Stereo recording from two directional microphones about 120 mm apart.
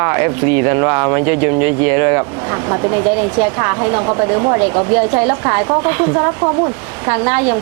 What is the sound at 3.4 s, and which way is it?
Speech, 25° right (ahead or behind).